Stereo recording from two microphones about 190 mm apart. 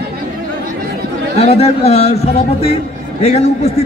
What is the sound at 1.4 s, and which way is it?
A man's voice, 35° left (ahead or behind).